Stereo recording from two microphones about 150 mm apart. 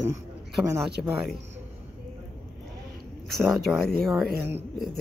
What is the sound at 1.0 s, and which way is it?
Speech, centre (ahead or behind).